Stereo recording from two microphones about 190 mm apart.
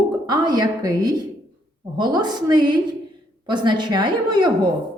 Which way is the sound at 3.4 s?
25° right (ahead or behind).